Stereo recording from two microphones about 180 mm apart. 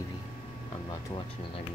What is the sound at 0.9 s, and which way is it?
Speech, 30° left (ahead or behind).